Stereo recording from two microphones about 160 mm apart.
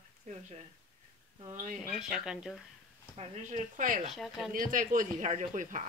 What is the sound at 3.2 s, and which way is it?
Speech, 45° right (ahead or behind).